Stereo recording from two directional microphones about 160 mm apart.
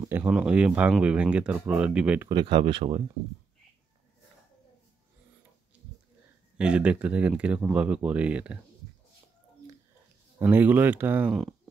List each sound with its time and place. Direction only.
0.0 s a sound: 15° right (ahead or behind)
0.3 s speech: 5° right (ahead or behind)
2.2 s speech: 30° right (ahead or behind)
6.6 s speech: 5° right (ahead or behind)
10.4 s speech: 10° right (ahead or behind)